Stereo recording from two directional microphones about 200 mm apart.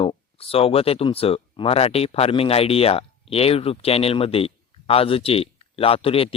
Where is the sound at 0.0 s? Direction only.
30° left (ahead or behind).